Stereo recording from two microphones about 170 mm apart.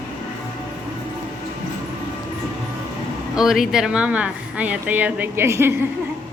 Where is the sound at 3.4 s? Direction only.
Centre (ahead or behind).